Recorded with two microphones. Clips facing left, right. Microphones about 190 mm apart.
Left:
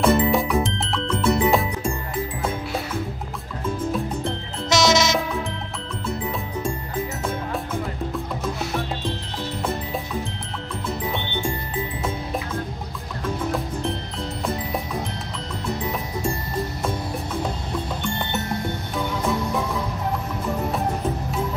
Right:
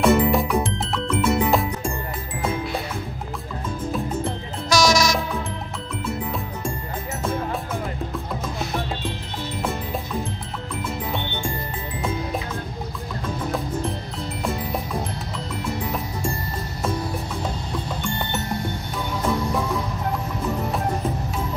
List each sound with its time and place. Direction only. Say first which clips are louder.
0.0 s music: right 1 dB; centre (ahead or behind)
4.6 s music: even; 20° left (ahead or behind)